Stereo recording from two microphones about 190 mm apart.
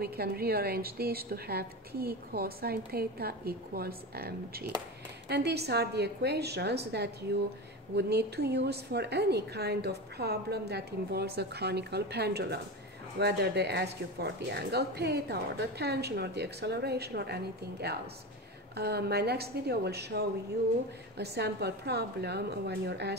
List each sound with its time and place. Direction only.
0.0 s a woman's voice: 55° right (ahead or behind)